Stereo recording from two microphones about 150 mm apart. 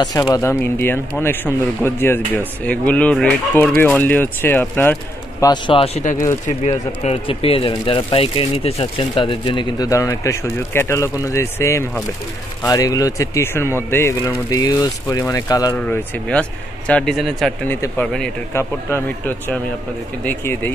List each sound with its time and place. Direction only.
0.3 s speech: 15° left (ahead or behind)
5.4 s speech: 30° left (ahead or behind)
6.4 s speech: 50° left (ahead or behind); by 15.7 s 25° left (ahead or behind)
15.7 s speech: 10° left (ahead or behind)
17.6 s speech: 10° left (ahead or behind)
18.5 s speech: 15° left (ahead or behind)